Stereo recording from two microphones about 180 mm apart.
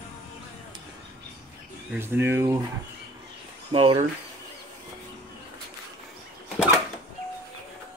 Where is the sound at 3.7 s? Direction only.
30° right (ahead or behind).